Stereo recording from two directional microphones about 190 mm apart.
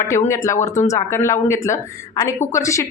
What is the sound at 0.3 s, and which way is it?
A woman's voice, 15° left (ahead or behind).